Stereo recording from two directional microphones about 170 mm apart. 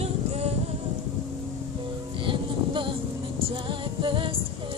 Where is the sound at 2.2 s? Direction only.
30° right (ahead or behind).